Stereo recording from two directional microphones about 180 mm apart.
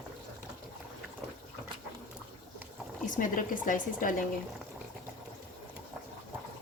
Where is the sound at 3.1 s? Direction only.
45° left (ahead or behind).